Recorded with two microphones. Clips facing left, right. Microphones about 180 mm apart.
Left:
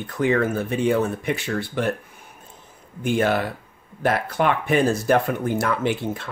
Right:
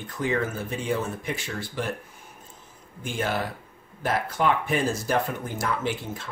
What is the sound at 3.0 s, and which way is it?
Speech, 65° left (ahead or behind).